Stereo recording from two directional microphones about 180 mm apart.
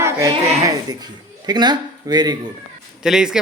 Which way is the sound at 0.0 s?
20° right (ahead or behind).